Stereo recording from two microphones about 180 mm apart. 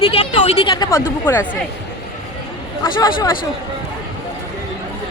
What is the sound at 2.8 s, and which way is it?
Speech, 20° left (ahead or behind).